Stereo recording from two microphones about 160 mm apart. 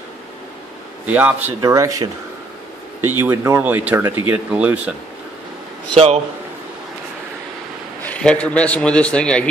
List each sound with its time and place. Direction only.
1.0 s speech: 10° right (ahead or behind)
8.0 s a man's voice: 10° left (ahead or behind)